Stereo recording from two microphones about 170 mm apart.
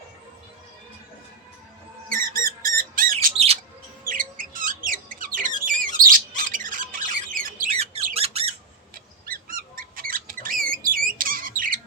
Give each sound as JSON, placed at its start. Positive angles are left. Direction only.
{"t": 2.0, "sound": "music", "side_deg": -55}
{"t": 3.3, "sound": "bird", "side_deg": -35}
{"t": 4.0, "sound": "a sound", "side_deg": -55}
{"t": 5.6, "sound": "squawk", "side_deg": -55}
{"t": 8.1, "sound": "squawk", "side_deg": -35}
{"t": 9.2, "sound": "bird", "side_deg": -55}